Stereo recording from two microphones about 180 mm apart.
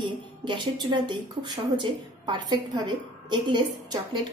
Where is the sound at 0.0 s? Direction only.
25° right (ahead or behind).